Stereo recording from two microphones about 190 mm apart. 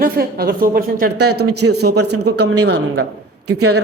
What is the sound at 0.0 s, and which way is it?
Speech, 55° right (ahead or behind).